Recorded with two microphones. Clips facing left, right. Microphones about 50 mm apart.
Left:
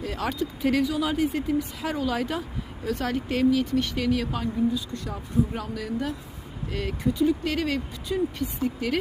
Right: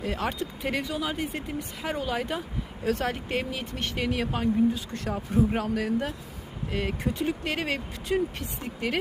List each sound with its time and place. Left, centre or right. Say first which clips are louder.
0.0 s speech: even; right
0.6 s speech: left 6 dB; centre
3.8 s speech: left 6 dB; right
4.0 s speech: left 2 dB; right
4.7 s speech: even; right
7.1 s speech: left 9 dB; right
7.4 s speech: left 3 dB; right
8.0 s speech: even; right
8.6 s speech: left 3 dB; right